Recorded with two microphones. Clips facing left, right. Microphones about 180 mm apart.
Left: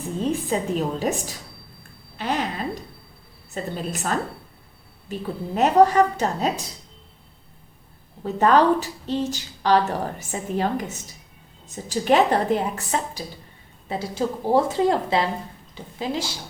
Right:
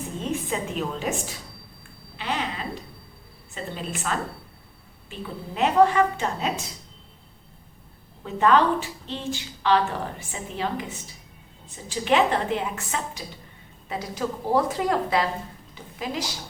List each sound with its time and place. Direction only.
0.2 s a woman's voice: 35° left (ahead or behind)
2.1 s a sound: 40° left (ahead or behind)
3.5 s a woman's voice: 40° left (ahead or behind)
8.2 s a woman's voice: 40° left (ahead or behind)